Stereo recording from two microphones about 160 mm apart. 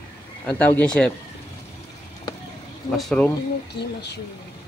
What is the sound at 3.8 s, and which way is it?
Speech, 90° left.